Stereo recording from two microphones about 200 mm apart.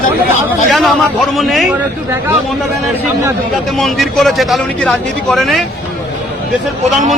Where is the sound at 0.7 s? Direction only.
Centre (ahead or behind).